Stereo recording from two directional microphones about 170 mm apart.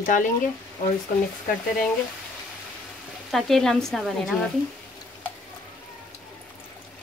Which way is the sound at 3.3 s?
Centre (ahead or behind).